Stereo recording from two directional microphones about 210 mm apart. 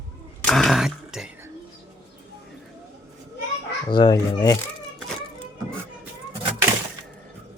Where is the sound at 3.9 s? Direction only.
20° left (ahead or behind).